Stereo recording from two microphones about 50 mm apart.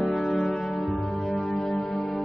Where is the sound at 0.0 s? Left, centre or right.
Centre.